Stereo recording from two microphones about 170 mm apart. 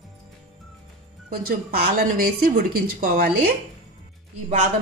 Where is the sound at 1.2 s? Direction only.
55° right (ahead or behind).